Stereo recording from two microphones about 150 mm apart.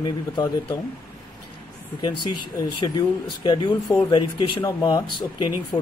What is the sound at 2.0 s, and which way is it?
Speech, 30° left (ahead or behind).